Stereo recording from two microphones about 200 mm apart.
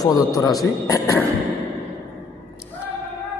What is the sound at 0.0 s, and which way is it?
Speech, 20° left (ahead or behind).